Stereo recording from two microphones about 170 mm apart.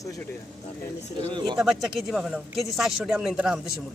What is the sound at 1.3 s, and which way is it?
Speech, 25° right (ahead or behind).